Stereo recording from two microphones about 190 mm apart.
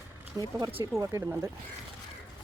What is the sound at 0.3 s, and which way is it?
Speech, 25° right (ahead or behind).